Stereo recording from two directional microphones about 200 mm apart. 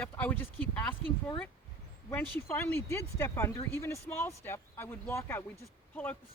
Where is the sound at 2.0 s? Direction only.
10° left (ahead or behind).